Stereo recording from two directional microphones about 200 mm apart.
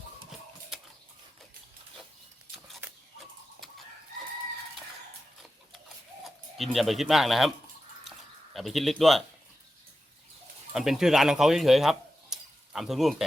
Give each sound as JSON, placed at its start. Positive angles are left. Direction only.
{"t": 3.6, "sound": "chicken", "side_deg": -50}
{"t": 6.2, "sound": "speech", "side_deg": 0}
{"t": 8.5, "sound": "speech", "side_deg": 0}
{"t": 10.8, "sound": "speech", "side_deg": 0}